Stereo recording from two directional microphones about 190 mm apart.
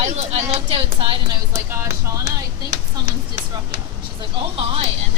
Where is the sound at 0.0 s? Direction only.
35° right (ahead or behind).